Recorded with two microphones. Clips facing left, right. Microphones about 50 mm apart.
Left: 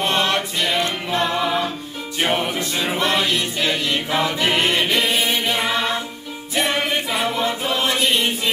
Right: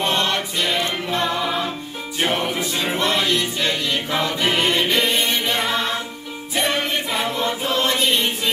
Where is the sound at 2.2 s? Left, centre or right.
Centre.